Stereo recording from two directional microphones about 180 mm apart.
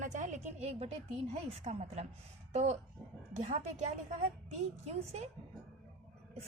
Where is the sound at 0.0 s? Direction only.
40° right (ahead or behind).